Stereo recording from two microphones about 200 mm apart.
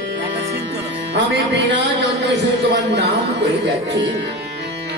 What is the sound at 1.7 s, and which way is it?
Speech, 60° right (ahead or behind).